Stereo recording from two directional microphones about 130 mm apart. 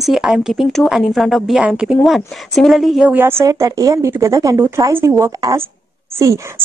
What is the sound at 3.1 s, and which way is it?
A woman's voice, 15° right (ahead or behind).